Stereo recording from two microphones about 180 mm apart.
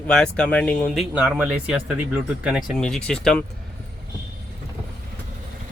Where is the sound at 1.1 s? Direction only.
5° right (ahead or behind).